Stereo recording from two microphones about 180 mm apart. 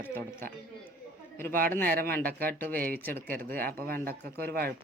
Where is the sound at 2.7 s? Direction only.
55° right (ahead or behind).